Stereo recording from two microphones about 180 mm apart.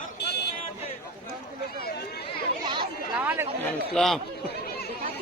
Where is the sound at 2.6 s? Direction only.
25° right (ahead or behind).